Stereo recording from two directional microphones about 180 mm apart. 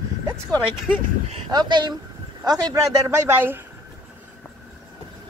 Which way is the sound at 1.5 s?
25° right (ahead or behind).